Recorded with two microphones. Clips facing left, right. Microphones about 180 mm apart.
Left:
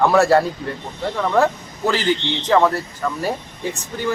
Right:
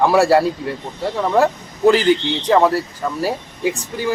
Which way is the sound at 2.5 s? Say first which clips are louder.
Right 2 dB; 15° right (ahead or behind).